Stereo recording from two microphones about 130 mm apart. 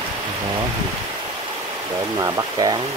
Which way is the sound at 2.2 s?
30° right (ahead or behind).